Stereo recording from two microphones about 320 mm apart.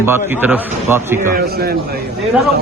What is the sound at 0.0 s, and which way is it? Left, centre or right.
A man's voice, centre.